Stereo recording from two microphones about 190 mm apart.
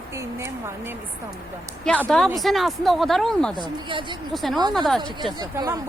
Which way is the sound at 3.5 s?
25° right (ahead or behind).